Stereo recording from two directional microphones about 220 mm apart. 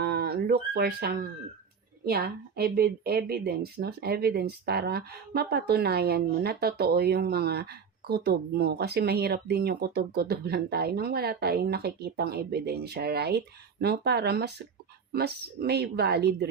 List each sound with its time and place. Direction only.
0.0 s a woman's voice: 45° right (ahead or behind)